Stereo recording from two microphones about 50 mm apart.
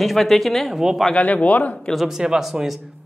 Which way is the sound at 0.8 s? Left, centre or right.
Centre.